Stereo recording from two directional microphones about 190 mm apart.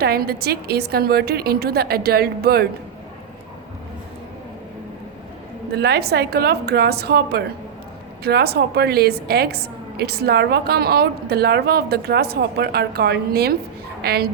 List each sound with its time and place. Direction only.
0.0 s a woman's voice: 55° right (ahead or behind)
5.7 s a woman's voice: 55° right (ahead or behind)